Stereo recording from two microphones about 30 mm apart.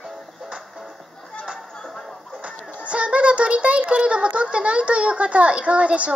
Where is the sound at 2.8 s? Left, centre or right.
Right.